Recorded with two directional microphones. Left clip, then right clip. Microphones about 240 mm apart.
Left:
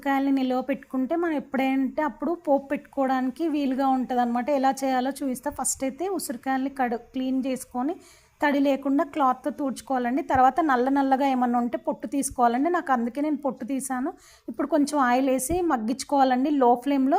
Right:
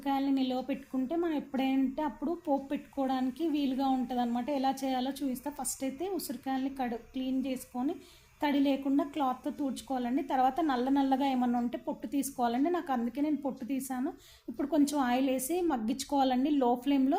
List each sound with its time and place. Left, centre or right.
0.0 s a woman's voice: left